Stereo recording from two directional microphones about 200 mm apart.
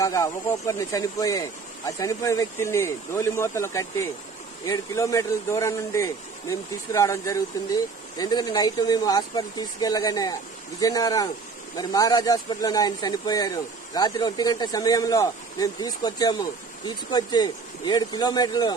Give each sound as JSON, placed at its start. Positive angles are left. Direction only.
{"t": 0.0, "sound": "speech", "side_deg": 15}